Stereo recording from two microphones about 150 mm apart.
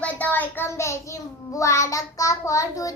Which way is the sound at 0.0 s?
10° left (ahead or behind).